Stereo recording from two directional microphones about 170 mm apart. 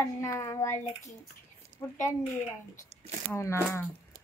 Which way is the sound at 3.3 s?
15° left (ahead or behind).